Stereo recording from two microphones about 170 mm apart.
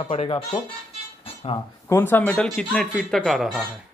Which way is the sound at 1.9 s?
10° left (ahead or behind).